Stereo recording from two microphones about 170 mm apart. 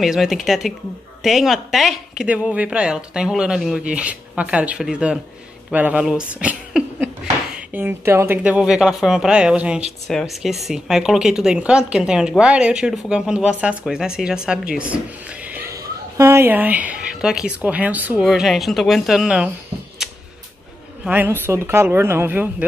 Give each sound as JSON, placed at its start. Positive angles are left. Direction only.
{"t": 0.0, "sound": "a woman's voice", "side_deg": 0}
{"t": 21.0, "sound": "speech", "side_deg": -10}